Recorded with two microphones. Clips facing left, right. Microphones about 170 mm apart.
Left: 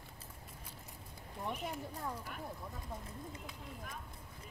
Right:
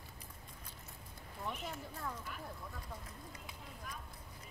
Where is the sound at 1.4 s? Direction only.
15° left (ahead or behind).